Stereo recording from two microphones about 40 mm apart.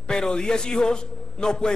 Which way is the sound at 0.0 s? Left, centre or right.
Centre.